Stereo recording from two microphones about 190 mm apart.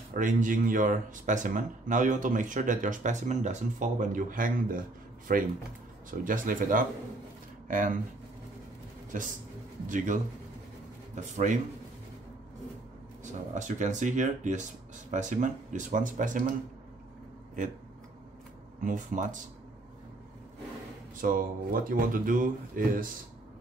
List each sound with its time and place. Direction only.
0.1 s speech: 45° right (ahead or behind)
9.1 s speech: 40° right (ahead or behind)
13.2 s speech: 40° right (ahead or behind)
18.8 s speech: 45° right (ahead or behind)
21.2 s speech: 45° right (ahead or behind)